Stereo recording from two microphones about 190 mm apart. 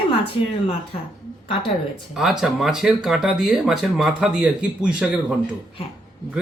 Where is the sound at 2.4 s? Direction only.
Centre (ahead or behind).